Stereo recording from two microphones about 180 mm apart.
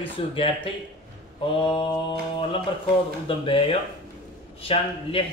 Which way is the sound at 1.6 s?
25° left (ahead or behind).